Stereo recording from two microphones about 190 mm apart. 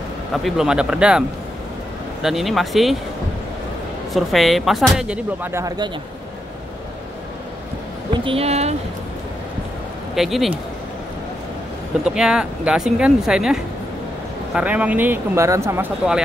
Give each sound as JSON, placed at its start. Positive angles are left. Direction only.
{"t": 0.3, "sound": "speech", "side_deg": 0}
{"t": 2.2, "sound": "speech", "side_deg": 0}
{"t": 4.1, "sound": "speech", "side_deg": 0}
{"t": 8.1, "sound": "a woman's voice", "side_deg": -25}
{"t": 10.1, "sound": "speech", "side_deg": 0}
{"t": 12.0, "sound": "speech", "side_deg": -5}